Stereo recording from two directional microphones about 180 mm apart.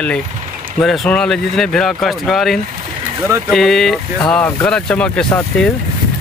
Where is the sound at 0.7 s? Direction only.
5° left (ahead or behind).